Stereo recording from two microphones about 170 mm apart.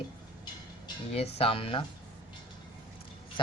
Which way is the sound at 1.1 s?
35° left (ahead or behind).